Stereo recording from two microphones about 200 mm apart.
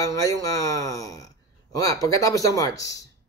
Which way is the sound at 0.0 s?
15° left (ahead or behind).